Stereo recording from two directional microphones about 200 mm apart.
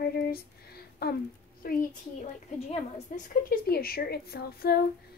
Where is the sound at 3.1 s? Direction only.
40° left (ahead or behind).